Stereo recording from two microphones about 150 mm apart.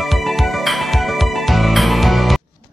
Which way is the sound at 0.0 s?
Centre (ahead or behind).